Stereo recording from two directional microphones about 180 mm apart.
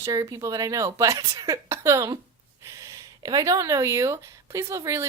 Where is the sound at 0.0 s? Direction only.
20° right (ahead or behind).